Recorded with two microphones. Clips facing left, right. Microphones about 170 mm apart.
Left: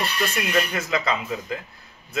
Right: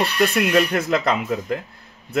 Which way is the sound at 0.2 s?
60° right (ahead or behind).